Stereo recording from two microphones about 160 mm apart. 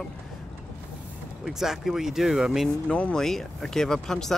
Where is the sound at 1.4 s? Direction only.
Centre (ahead or behind).